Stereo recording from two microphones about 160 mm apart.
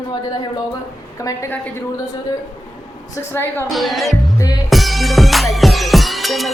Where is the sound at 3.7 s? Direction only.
Centre (ahead or behind).